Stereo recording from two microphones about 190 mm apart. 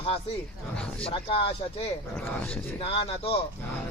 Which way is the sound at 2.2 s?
10° left (ahead or behind).